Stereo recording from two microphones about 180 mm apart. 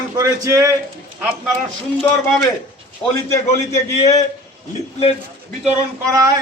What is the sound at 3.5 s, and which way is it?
Speech, 40° left (ahead or behind).